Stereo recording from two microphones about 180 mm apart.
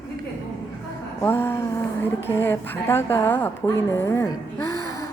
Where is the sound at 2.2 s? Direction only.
15° left (ahead or behind).